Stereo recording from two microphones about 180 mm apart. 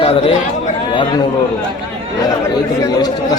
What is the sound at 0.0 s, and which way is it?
Speech, 30° left (ahead or behind).